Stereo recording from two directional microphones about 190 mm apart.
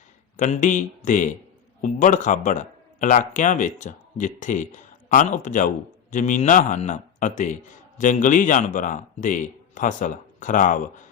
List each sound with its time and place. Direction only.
0.3 s speech: 40° left (ahead or behind)